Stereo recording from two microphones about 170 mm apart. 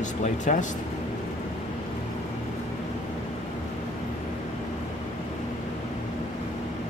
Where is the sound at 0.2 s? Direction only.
45° left (ahead or behind).